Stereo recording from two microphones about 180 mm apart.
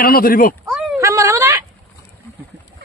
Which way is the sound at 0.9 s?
15° right (ahead or behind).